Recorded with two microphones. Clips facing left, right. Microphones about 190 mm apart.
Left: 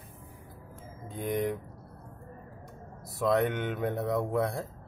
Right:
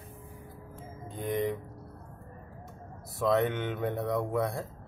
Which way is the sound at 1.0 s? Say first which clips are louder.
Even; centre (ahead or behind).